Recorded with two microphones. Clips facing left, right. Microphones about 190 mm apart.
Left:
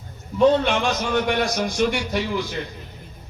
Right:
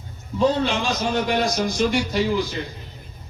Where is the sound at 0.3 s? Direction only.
60° left (ahead or behind).